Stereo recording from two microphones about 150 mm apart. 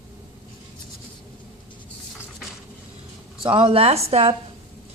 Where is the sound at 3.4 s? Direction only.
35° right (ahead or behind).